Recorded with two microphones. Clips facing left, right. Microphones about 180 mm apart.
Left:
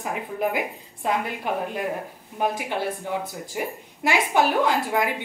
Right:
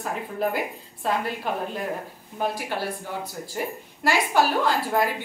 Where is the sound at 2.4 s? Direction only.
20° left (ahead or behind).